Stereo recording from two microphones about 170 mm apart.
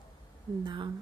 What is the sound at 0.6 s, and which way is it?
Speech, 25° right (ahead or behind).